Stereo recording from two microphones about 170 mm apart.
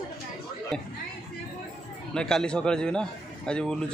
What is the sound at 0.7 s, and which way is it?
Speech, 5° left (ahead or behind).